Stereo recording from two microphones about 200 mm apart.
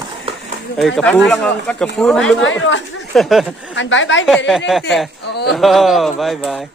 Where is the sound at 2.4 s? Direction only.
70° left (ahead or behind).